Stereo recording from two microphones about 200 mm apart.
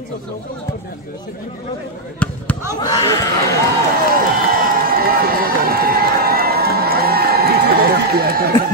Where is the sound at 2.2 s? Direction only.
5° left (ahead or behind).